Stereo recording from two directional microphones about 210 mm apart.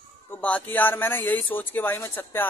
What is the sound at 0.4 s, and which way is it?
A man's voice, 5° left (ahead or behind).